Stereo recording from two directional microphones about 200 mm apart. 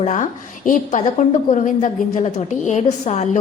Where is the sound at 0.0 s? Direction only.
40° left (ahead or behind).